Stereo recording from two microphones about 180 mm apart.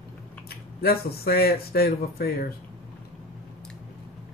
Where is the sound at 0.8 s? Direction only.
60° left (ahead or behind).